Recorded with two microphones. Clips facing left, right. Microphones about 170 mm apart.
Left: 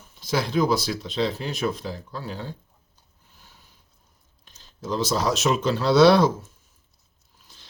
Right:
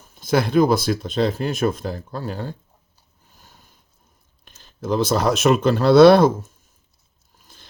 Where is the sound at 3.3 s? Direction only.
45° right (ahead or behind).